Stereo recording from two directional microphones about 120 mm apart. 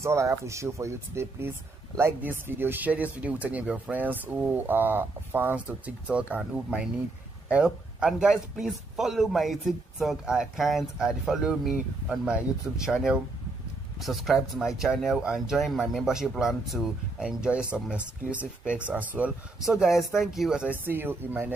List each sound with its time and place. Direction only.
0.0 s speech: 25° right (ahead or behind)